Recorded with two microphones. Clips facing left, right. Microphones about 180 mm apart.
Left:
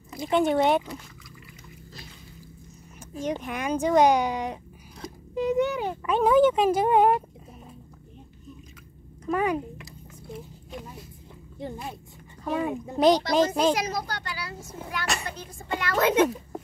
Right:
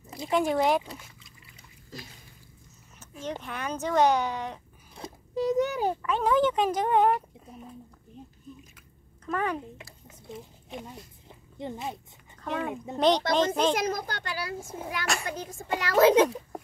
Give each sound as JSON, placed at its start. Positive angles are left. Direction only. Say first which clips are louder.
{"t": 0.3, "sound": "speech", "louder": "left 3 dB", "side_deg": 0}
{"t": 3.2, "sound": "a child's voice", "louder": "left 5 dB", "side_deg": 15}
{"t": 4.9, "sound": "a sound", "louder": "left 1 dB", "side_deg": -30}
{"t": 6.0, "sound": "a child's voice", "louder": "left 7 dB", "side_deg": 15}
{"t": 9.2, "sound": "a child's voice", "louder": "left 5 dB", "side_deg": 10}
{"t": 9.8, "sound": "a sound", "louder": "left 4 dB", "side_deg": -25}
{"t": 11.5, "sound": "speech", "louder": "even", "side_deg": -20}
{"t": 12.4, "sound": "a child's voice", "louder": "left 4 dB", "side_deg": 10}
{"t": 13.7, "sound": "a child's voice", "louder": "even", "side_deg": -50}
{"t": 15.3, "sound": "a child's voice", "louder": "right 1 dB", "side_deg": -40}